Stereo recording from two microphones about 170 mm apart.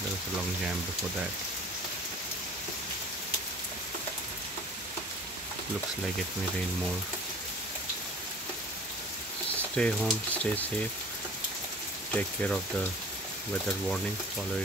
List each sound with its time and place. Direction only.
9.6 s speech: 5° left (ahead or behind)
12.1 s speech: 10° left (ahead or behind)